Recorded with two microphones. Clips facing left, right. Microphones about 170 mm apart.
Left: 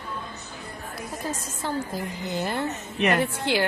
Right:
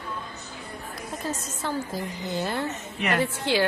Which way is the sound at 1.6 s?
15° left (ahead or behind).